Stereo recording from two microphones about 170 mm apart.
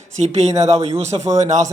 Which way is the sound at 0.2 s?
40° right (ahead or behind).